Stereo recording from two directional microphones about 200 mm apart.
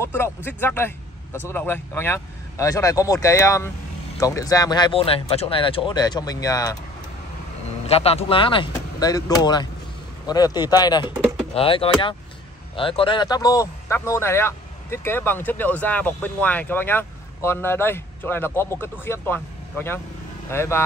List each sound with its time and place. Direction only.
0.0 s speech: 10° left (ahead or behind)
7.8 s speech: 30° left (ahead or behind); by 20.8 s 15° left (ahead or behind)